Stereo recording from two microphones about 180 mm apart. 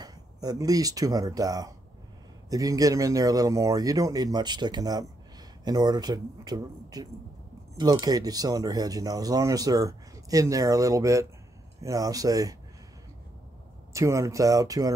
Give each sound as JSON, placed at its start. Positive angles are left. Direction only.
{"t": 0.0, "sound": "speech", "side_deg": -20}
{"t": 13.9, "sound": "speech", "side_deg": -15}